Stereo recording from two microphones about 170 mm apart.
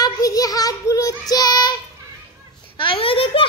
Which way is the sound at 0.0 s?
20° left (ahead or behind).